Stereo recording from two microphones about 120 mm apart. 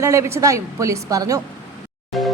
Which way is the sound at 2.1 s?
Centre (ahead or behind).